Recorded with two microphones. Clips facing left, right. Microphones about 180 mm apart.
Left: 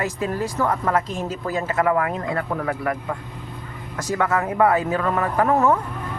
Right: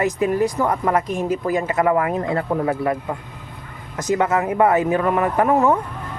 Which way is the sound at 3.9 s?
20° right (ahead or behind).